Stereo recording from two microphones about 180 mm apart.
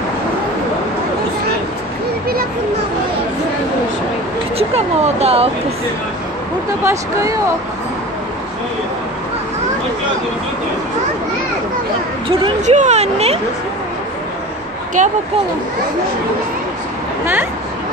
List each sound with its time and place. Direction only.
4.6 s speech: 35° right (ahead or behind)
6.8 s speech: 15° right (ahead or behind)
12.6 s speech: 40° right (ahead or behind)
15.0 s speech: 45° right (ahead or behind)